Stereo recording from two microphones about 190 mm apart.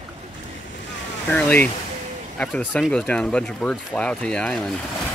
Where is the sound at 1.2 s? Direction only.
10° left (ahead or behind).